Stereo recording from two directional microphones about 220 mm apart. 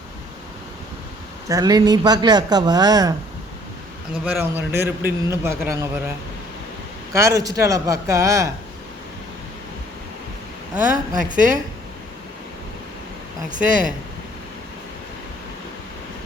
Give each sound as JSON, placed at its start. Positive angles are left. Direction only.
{"t": 1.5, "sound": "speech", "side_deg": -15}
{"t": 4.3, "sound": "speech", "side_deg": -10}
{"t": 7.1, "sound": "speech", "side_deg": -15}
{"t": 11.2, "sound": "a woman's voice", "side_deg": -35}
{"t": 13.5, "sound": "a woman's voice", "side_deg": -35}